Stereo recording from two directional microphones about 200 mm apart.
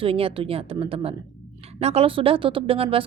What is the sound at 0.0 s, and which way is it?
A woman's voice, 25° right (ahead or behind).